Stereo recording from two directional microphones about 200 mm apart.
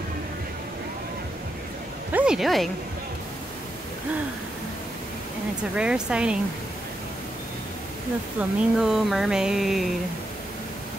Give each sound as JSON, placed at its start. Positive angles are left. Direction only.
{"t": 2.1, "sound": "a woman's voice", "side_deg": -5}
{"t": 5.8, "sound": "speech", "side_deg": -5}
{"t": 8.4, "sound": "speech", "side_deg": -5}